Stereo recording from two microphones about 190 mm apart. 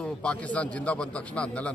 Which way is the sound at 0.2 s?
5° left (ahead or behind).